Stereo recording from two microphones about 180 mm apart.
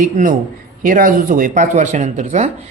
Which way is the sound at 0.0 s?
45° right (ahead or behind).